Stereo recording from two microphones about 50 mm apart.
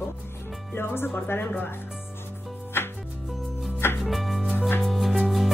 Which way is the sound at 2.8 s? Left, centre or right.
Left.